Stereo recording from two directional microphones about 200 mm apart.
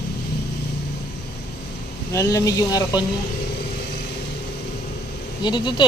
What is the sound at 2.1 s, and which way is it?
Speech, 15° left (ahead or behind).